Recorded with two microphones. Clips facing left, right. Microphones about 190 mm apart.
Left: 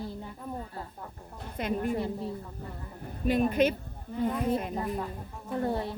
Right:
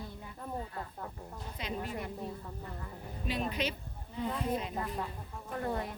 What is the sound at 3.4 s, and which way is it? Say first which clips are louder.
Speech: left 11 dB; 50° left (ahead or behind).